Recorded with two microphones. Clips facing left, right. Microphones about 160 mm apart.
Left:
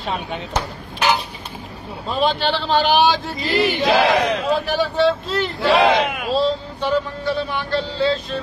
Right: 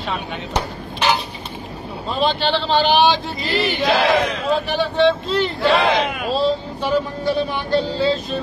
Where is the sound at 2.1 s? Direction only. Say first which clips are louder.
Even; 10° left (ahead or behind).